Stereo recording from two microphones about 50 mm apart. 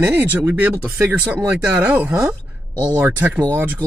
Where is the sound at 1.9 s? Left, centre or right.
Right.